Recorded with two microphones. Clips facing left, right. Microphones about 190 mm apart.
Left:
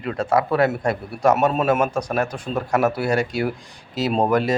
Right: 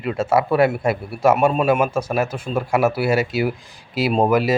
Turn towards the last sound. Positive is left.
turn(degrees=-5)  # may be behind; listen again after turning